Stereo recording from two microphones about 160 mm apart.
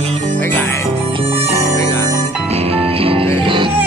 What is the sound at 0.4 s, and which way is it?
Music, 15° left (ahead or behind).